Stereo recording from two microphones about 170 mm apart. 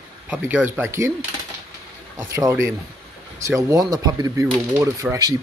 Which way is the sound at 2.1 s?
20° right (ahead or behind).